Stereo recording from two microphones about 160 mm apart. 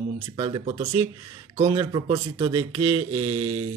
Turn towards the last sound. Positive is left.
turn(degrees=-35)  # may be behind; listen again after turning